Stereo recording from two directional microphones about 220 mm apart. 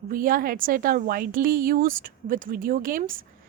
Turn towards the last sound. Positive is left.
turn(degrees=-40)  # may be behind; listen again after turning